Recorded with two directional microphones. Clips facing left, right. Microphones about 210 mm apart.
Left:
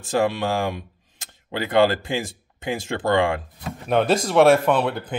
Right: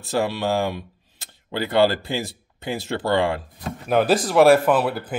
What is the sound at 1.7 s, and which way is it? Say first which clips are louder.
Speech: left 1 dB; 50° left (ahead or behind).